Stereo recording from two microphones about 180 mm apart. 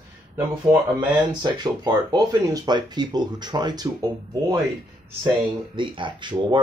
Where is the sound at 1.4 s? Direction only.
25° right (ahead or behind).